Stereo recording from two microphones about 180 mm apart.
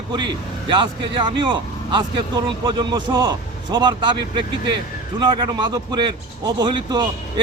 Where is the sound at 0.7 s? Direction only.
25° right (ahead or behind).